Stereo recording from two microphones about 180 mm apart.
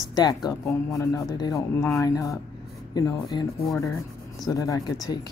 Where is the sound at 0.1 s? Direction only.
20° left (ahead or behind).